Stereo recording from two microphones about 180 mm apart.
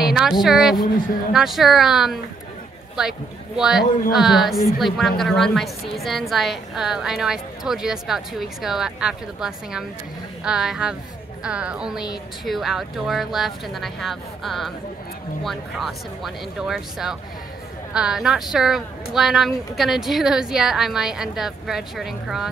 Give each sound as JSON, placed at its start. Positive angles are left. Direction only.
{"t": 0.0, "sound": "a woman's voice", "side_deg": 0}